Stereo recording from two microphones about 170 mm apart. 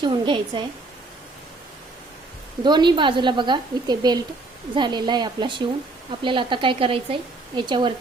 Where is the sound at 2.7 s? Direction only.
25° right (ahead or behind).